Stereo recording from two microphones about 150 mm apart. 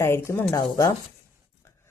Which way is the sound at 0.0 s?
15° left (ahead or behind).